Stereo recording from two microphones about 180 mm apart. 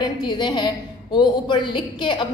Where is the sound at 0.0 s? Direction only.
25° left (ahead or behind).